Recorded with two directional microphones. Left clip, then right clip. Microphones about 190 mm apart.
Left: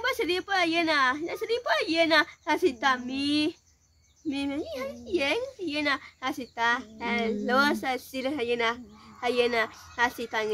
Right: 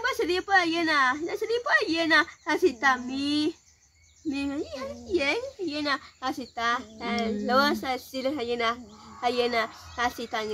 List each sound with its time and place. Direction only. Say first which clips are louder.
0.2 s a woman's voice: right 3 dB; 25° left (ahead or behind)